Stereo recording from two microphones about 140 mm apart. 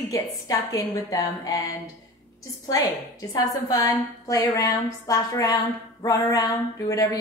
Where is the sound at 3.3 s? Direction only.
25° left (ahead or behind).